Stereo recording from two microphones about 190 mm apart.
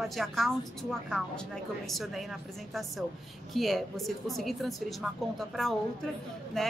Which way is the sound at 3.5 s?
Centre (ahead or behind).